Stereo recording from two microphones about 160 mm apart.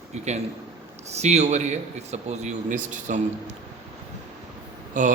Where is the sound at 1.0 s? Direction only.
45° right (ahead or behind).